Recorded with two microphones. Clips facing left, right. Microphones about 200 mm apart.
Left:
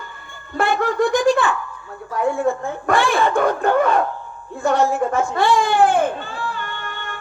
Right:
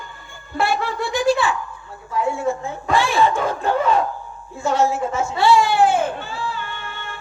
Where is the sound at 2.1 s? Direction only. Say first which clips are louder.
Left 2 dB; 55° left (ahead or behind).